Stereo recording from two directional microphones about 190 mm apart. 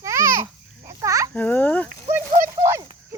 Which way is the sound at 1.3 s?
10° left (ahead or behind).